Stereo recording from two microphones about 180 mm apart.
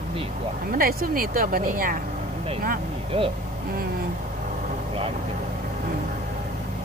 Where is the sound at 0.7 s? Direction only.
55° right (ahead or behind).